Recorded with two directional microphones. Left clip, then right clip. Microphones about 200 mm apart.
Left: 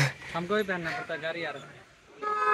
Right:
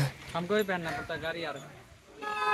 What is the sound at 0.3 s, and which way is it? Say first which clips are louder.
Speech: right 4 dB; 30° left (ahead or behind).